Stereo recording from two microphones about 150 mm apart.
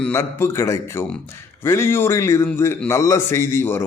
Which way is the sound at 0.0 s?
15° left (ahead or behind).